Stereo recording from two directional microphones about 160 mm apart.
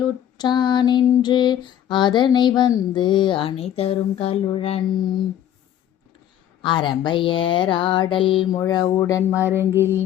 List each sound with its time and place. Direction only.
0.3 s female singing: 25° left (ahead or behind)
4.4 s mantra: 35° left (ahead or behind)
6.6 s mantra: 30° left (ahead or behind)
9.0 s female singing: 20° left (ahead or behind)
9.3 s a sound: 10° right (ahead or behind)